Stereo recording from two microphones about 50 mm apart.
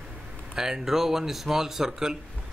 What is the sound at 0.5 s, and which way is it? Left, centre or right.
A man's voice, centre.